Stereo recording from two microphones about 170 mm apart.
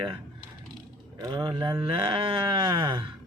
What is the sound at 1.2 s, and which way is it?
Speech, 25° right (ahead or behind).